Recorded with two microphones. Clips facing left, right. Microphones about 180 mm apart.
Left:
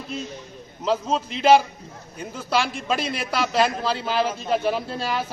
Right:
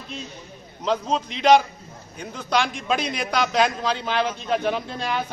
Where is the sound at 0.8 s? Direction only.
5° left (ahead or behind).